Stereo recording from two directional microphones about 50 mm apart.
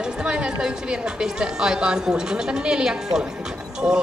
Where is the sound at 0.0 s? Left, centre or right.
Centre.